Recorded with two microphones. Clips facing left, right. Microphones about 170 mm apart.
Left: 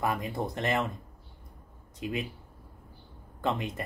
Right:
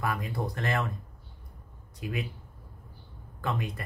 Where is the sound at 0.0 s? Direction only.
20° left (ahead or behind).